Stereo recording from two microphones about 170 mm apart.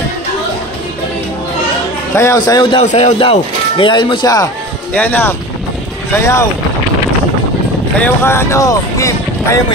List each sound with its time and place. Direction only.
2.1 s speech: 20° left (ahead or behind)
2.8 s a man's voice: 45° left (ahead or behind)
3.2 s speech: 30° left (ahead or behind)
4.9 s speech: 10° left (ahead or behind)
8.0 s speech: 15° left (ahead or behind)